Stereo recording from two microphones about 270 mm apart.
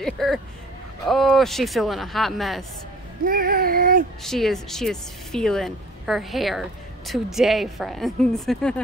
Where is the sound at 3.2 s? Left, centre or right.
Right.